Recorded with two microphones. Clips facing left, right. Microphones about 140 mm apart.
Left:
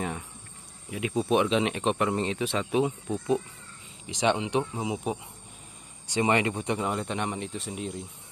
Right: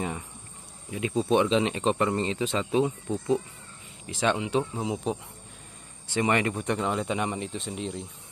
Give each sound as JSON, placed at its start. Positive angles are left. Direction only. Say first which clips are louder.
{"t": 0.9, "sound": "speech", "louder": "right 1 dB", "side_deg": 5}
{"t": 2.8, "sound": "speech", "louder": "right 1 dB", "side_deg": 15}
{"t": 6.1, "sound": "speech", "louder": "even", "side_deg": 20}
{"t": 6.8, "sound": "speech", "louder": "right 2 dB", "side_deg": 0}